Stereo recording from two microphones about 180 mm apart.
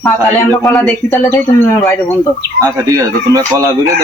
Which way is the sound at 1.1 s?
15° left (ahead or behind).